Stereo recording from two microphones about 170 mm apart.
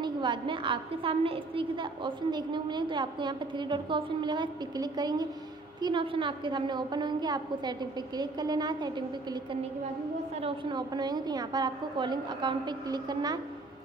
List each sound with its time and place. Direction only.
0.0 s a woman's voice: 25° right (ahead or behind)